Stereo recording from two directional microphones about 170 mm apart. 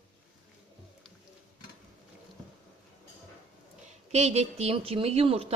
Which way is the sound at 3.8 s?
40° right (ahead or behind).